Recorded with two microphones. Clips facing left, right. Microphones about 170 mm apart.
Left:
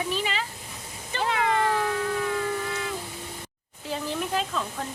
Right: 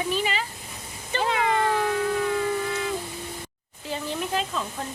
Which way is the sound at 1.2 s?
20° right (ahead or behind).